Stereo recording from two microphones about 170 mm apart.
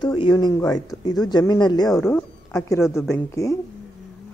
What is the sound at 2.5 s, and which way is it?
A woman's voice, 15° left (ahead or behind).